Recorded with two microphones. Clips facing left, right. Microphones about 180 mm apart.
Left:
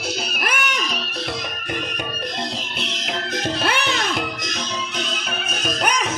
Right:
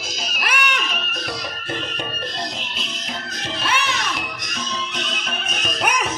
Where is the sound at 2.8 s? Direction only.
85° left.